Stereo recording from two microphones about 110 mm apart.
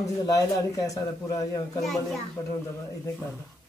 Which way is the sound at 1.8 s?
Centre (ahead or behind).